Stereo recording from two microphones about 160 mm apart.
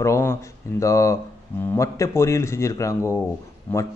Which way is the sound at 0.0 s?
15° left (ahead or behind).